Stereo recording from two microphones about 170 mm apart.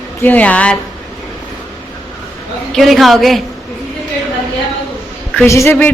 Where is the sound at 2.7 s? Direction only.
Centre (ahead or behind).